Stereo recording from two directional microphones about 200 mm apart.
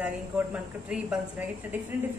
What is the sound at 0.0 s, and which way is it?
A woman's voice, 5° right (ahead or behind).